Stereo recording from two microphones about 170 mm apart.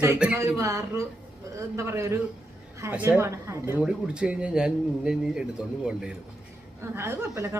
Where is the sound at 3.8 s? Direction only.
5° right (ahead or behind).